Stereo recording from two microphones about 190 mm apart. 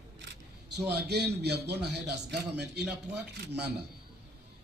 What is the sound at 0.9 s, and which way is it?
Speech, 60° right (ahead or behind).